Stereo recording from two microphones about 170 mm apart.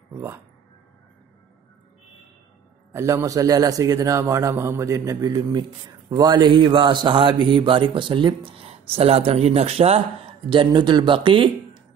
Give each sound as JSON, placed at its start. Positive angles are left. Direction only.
{"t": 2.9, "sound": "a man's voice", "side_deg": -15}